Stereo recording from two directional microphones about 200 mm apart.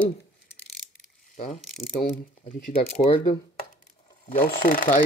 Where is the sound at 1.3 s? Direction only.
35° left (ahead or behind).